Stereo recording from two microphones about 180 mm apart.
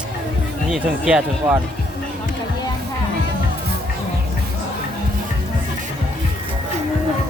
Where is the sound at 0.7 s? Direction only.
5° right (ahead or behind).